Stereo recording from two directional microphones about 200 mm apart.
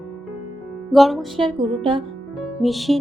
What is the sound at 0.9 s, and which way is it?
Music, centre (ahead or behind).